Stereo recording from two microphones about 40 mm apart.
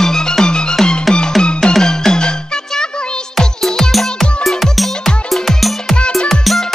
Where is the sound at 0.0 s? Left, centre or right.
Centre.